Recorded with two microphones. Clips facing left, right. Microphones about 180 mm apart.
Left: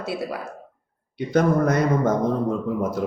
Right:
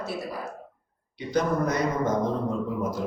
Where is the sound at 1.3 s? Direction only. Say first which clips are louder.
Left 5 dB; 55° left (ahead or behind).